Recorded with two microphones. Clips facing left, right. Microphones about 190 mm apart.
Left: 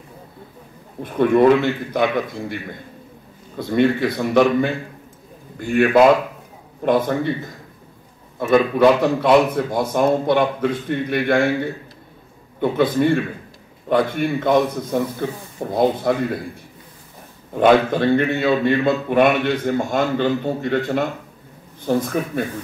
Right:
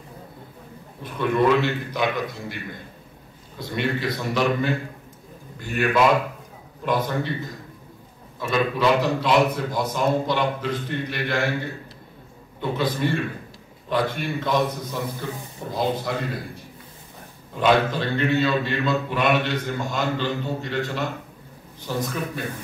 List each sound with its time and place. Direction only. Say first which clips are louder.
1.0 s speech: left 7 dB; 55° left (ahead or behind)
8.4 s speech: left 8 dB; 55° left (ahead or behind)
12.5 s speech: left 8 dB; 55° left (ahead or behind)
17.6 s speech: left 6 dB; 55° left (ahead or behind)